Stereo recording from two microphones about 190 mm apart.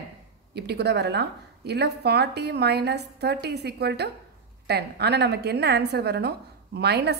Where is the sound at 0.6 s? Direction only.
60° right (ahead or behind).